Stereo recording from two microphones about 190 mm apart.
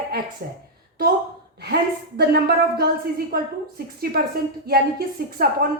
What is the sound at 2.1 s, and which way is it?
A woman's voice, 60° right (ahead or behind).